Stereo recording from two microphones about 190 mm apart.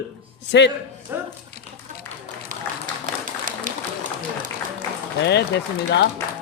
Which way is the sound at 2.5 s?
45° right (ahead or behind).